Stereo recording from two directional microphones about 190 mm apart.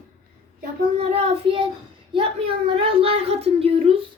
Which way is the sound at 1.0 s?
30° right (ahead or behind).